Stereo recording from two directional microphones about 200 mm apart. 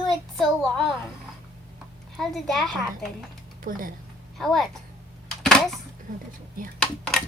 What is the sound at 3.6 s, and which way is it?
Speech, 45° right (ahead or behind).